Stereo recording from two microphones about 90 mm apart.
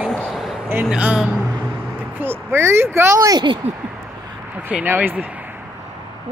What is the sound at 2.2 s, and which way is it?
Speech, 25° right (ahead or behind).